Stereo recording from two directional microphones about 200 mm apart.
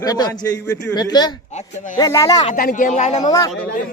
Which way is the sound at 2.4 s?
45° left (ahead or behind).